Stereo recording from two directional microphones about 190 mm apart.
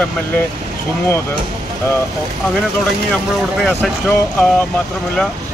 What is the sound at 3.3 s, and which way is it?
Speech, centre (ahead or behind).